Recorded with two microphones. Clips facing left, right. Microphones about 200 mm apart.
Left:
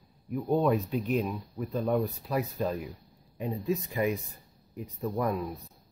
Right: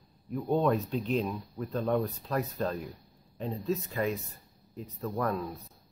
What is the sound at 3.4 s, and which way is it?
Speech, 15° left (ahead or behind).